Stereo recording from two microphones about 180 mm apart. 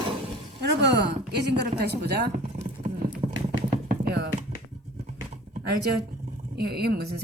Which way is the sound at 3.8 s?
60° right (ahead or behind).